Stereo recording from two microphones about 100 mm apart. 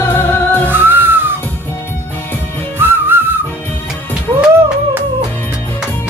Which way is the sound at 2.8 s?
20° right (ahead or behind).